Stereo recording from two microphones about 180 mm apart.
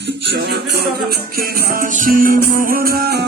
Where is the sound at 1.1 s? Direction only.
55° right (ahead or behind).